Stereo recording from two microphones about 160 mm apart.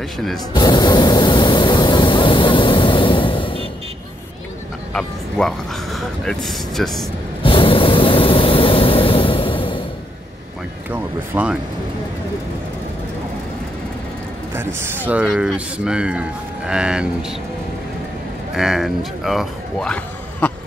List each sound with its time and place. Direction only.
0.5 s vehicle: 25° left (ahead or behind)
4.9 s speech: centre (ahead or behind)
7.4 s vehicle: 35° left (ahead or behind)
10.9 s a sound: 10° right (ahead or behind)
14.5 s speech: 15° right (ahead or behind)
18.5 s speech: centre (ahead or behind)